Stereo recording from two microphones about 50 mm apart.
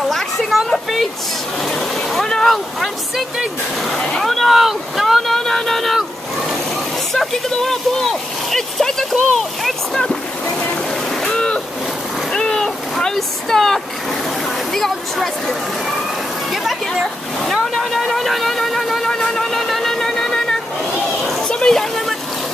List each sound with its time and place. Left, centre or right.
0.1 s a sound: centre
1.6 s vehicle: centre
2.2 s speech: centre
4.2 s boat: centre
7.2 s a sound: centre
11.2 s boat: centre
12.3 s vehicle: centre
14.7 s speech: centre
16.6 s speech: centre
19.0 s vehicle: centre
21.5 s a sound: centre